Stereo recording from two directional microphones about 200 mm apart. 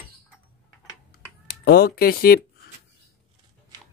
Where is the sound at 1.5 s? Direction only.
50° left (ahead or behind).